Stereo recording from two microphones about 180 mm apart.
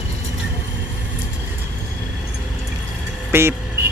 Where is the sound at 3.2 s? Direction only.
15° right (ahead or behind).